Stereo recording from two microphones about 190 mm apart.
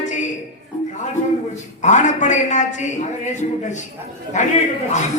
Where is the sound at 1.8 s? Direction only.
40° left (ahead or behind).